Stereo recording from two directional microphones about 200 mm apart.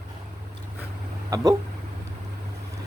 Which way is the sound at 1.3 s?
15° right (ahead or behind).